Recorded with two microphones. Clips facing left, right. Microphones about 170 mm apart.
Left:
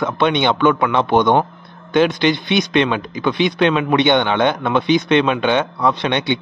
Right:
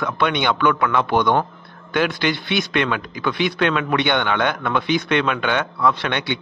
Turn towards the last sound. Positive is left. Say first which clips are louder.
# left 3 dB
turn(degrees=20)  # may be behind; listen again after turning